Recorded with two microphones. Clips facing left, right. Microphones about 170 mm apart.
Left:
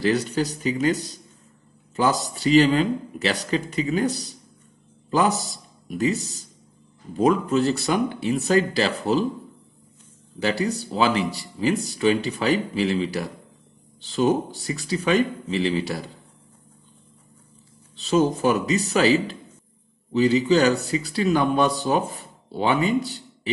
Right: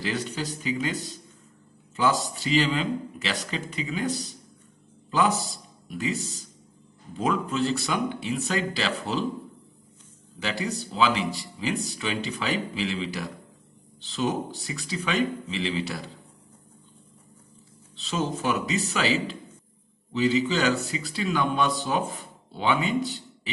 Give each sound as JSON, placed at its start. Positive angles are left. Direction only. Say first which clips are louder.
{"t": 0.0, "sound": "speech", "louder": "left 8 dB", "side_deg": 40}
{"t": 2.0, "sound": "speech", "louder": "left 2 dB", "side_deg": 40}
{"t": 5.9, "sound": "speech", "louder": "left 6 dB", "side_deg": 45}
{"t": 10.4, "sound": "speech", "louder": "left 6 dB", "side_deg": 45}
{"t": 17.9, "sound": "speech", "louder": "left 9 dB", "side_deg": 40}
{"t": 20.1, "sound": "speech", "louder": "left 5 dB", "side_deg": 40}